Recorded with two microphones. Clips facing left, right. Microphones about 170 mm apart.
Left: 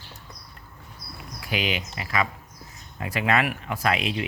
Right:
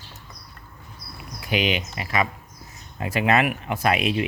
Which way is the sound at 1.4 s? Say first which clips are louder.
Right 4 dB; 20° right (ahead or behind).